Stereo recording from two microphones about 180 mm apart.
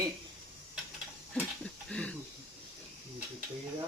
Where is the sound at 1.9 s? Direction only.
5° left (ahead or behind).